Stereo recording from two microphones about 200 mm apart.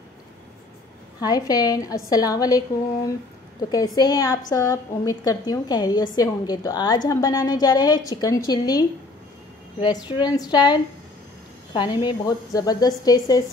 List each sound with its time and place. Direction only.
1.2 s a woman's voice: 20° left (ahead or behind)
3.7 s a woman's voice: 20° left (ahead or behind)